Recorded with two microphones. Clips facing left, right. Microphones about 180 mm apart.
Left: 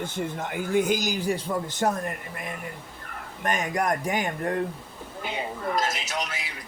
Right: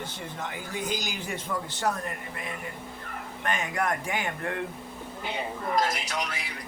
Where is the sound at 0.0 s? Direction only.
50° left (ahead or behind).